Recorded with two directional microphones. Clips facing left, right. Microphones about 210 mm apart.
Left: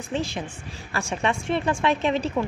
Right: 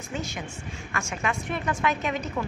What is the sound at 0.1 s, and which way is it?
A woman's voice, 30° left (ahead or behind).